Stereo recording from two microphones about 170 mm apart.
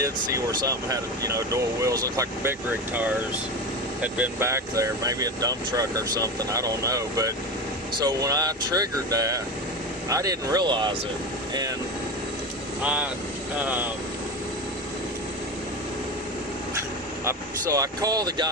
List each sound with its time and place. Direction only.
0.0 s speech: 20° right (ahead or behind)
12.8 s speech: 10° right (ahead or behind)
17.2 s speech: 20° right (ahead or behind)